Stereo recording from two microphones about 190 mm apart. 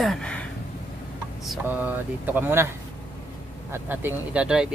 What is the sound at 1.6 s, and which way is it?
Speech, 10° right (ahead or behind).